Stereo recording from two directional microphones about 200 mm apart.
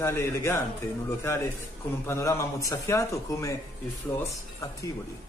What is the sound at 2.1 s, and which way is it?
A man's voice, 15° left (ahead or behind).